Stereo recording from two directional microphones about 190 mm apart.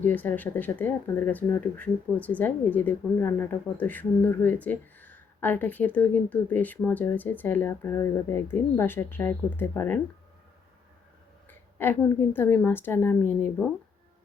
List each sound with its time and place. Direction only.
0.0 s speech: 10° left (ahead or behind)
11.4 s speech: 10° left (ahead or behind)